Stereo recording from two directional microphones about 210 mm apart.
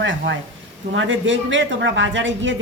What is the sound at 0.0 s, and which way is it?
A woman's voice, 60° right (ahead or behind).